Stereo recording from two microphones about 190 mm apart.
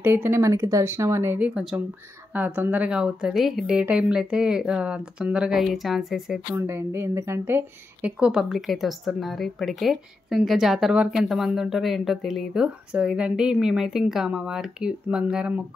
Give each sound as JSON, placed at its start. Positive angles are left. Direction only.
{"t": 0.0, "sound": "a woman's voice", "side_deg": -10}